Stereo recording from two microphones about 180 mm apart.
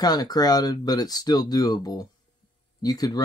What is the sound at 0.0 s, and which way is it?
Speech, 20° left (ahead or behind).